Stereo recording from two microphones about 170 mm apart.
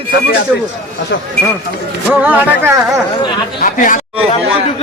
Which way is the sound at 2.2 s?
10° right (ahead or behind).